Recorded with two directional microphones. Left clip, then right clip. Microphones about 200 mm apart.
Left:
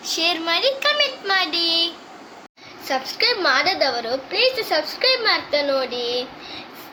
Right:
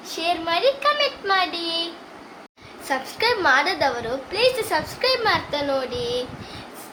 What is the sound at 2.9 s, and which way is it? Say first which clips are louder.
A child's voice: left 1 dB; 15° right (ahead or behind).